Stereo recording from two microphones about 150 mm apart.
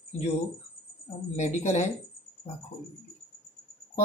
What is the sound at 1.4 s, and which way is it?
Speech, 50° left (ahead or behind).